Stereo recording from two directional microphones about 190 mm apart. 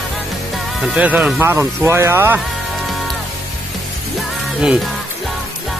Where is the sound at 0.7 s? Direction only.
5° right (ahead or behind).